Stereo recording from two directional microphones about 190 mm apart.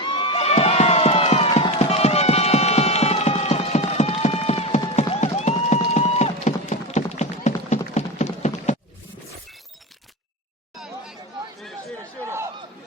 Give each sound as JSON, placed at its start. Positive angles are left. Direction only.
{"t": 0.0, "sound": "run", "side_deg": 30}
{"t": 7.9, "sound": "clip-clop", "side_deg": 35}
{"t": 12.2, "sound": "a sound", "side_deg": -15}